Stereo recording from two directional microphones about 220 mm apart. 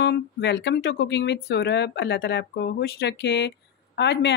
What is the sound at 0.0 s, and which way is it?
Speech, 50° left (ahead or behind).